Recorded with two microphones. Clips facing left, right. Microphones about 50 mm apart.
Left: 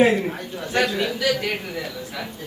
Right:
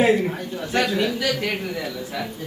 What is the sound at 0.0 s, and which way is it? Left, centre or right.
A man's voice, centre.